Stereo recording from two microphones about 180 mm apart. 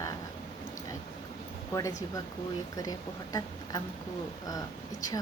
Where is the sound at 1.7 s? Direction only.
20° left (ahead or behind).